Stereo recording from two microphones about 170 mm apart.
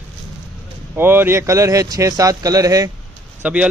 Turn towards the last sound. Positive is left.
turn(degrees=-5)  # may be behind; listen again after turning